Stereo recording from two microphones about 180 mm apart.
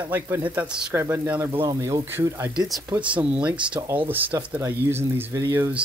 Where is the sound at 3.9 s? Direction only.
10° right (ahead or behind).